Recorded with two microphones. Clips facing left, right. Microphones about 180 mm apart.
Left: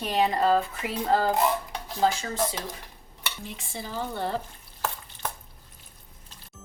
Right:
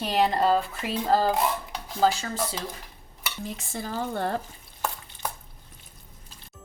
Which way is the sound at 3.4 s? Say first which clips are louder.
Right 6 dB; 45° right (ahead or behind).